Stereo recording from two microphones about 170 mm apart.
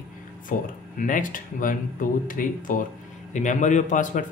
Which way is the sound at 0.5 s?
50° left (ahead or behind).